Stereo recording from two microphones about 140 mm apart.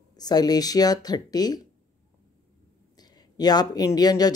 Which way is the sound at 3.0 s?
30° left (ahead or behind).